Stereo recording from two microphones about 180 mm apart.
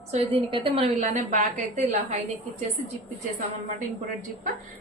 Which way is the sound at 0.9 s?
40° right (ahead or behind).